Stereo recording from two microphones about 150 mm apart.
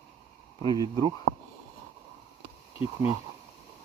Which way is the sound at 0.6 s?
30° right (ahead or behind).